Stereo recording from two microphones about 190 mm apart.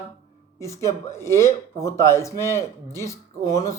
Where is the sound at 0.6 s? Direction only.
15° left (ahead or behind).